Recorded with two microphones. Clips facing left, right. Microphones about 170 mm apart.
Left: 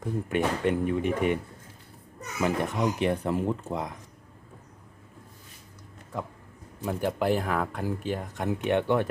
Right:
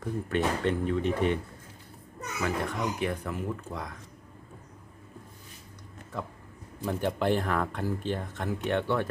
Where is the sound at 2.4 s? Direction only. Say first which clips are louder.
Left 4 dB; 20° left (ahead or behind).